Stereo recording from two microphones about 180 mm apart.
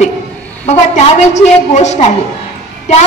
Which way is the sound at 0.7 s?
40° left (ahead or behind).